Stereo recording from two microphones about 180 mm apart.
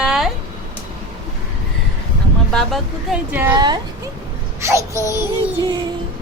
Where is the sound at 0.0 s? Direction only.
Centre (ahead or behind).